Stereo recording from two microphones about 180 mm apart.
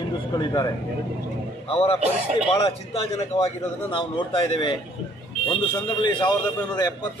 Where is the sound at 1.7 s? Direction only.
35° left (ahead or behind).